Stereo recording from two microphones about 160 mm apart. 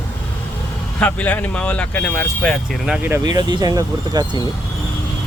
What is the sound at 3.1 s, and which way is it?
Speech, 25° right (ahead or behind).